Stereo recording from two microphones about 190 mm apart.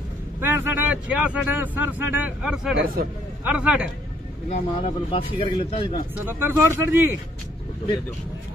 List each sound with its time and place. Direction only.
0.4 s speech: 10° right (ahead or behind)
4.5 s speech: 30° left (ahead or behind)
6.1 s speech: 10° right (ahead or behind)